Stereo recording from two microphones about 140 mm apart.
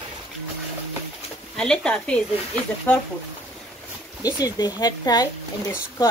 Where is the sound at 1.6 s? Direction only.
5° left (ahead or behind).